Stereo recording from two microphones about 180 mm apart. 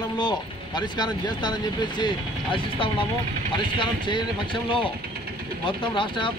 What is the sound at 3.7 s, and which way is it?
Speech, 25° left (ahead or behind).